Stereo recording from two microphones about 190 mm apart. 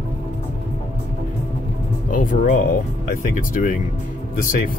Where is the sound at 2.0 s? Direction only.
45° left (ahead or behind).